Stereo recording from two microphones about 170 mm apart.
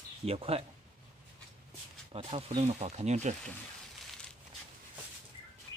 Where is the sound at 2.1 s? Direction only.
35° right (ahead or behind).